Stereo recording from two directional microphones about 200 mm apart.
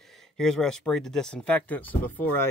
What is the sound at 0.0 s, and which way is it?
Speech, centre (ahead or behind).